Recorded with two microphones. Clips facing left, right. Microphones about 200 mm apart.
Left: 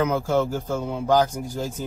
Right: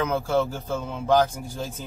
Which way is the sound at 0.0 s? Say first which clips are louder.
Left 2 dB; 15° left (ahead or behind).